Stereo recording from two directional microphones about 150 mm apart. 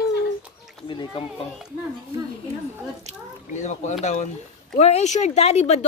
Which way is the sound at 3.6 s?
55° left (ahead or behind).